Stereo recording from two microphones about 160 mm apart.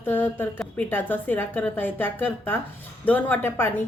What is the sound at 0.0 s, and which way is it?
A woman's voice, 15° left (ahead or behind).